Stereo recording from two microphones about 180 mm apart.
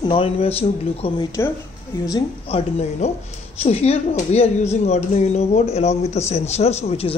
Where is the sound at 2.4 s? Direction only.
35° left (ahead or behind).